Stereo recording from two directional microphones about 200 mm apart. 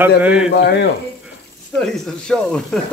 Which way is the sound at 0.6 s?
55° left (ahead or behind).